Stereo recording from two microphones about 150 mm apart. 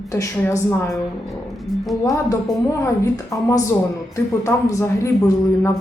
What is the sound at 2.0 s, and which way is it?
Speech, 20° left (ahead or behind).